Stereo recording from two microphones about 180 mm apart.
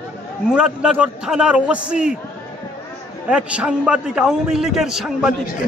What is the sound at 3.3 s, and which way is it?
A man's voice, 5° right (ahead or behind).